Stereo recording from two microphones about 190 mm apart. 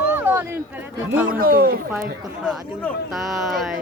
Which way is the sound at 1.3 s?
50° right (ahead or behind).